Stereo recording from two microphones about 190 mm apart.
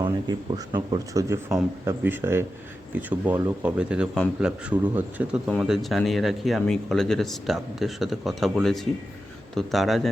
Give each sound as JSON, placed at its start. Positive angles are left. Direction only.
{"t": 0.0, "sound": "speech", "side_deg": -20}